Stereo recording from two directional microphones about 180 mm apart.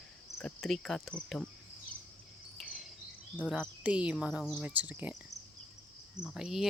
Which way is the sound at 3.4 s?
5° right (ahead or behind).